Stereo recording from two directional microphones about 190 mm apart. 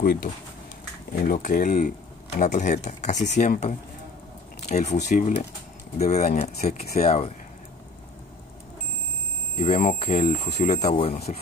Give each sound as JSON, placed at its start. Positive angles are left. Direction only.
{"t": 0.0, "sound": "speech", "side_deg": 50}
{"t": 9.6, "sound": "speech", "side_deg": 35}